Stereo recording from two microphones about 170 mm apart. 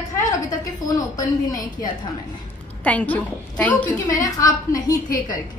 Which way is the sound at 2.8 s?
10° left (ahead or behind).